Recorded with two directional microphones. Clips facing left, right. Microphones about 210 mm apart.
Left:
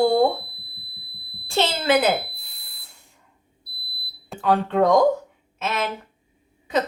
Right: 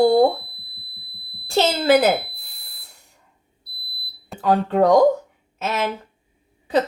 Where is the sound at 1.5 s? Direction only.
40° right (ahead or behind).